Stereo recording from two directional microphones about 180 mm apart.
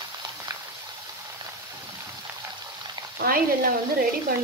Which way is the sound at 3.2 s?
55° right (ahead or behind).